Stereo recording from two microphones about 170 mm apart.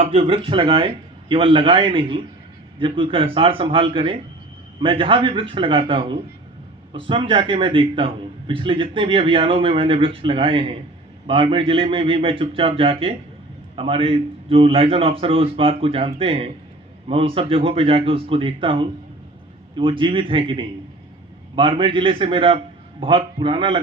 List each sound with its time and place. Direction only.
0.0 s a man's voice: 35° right (ahead or behind)